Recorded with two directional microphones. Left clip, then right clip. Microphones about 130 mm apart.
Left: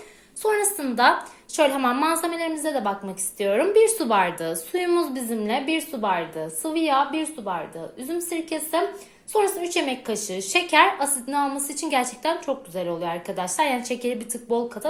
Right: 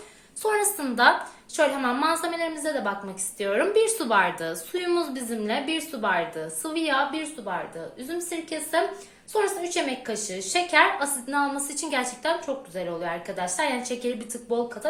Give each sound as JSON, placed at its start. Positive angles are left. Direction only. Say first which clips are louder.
{"t": 0.4, "sound": "a woman's voice", "louder": "left 2 dB", "side_deg": 35}
{"t": 1.5, "sound": "a woman's voice", "louder": "left 3 dB", "side_deg": 50}
{"t": 3.3, "sound": "a woman's voice", "louder": "left 4 dB", "side_deg": 35}
{"t": 11.3, "sound": "a woman's voice", "louder": "even", "side_deg": 35}